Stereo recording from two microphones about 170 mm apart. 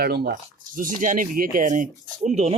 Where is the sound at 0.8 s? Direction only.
50° right (ahead or behind).